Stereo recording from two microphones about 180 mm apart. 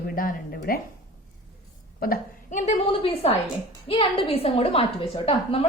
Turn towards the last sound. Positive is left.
turn(degrees=30)  # may be behind; listen again after turning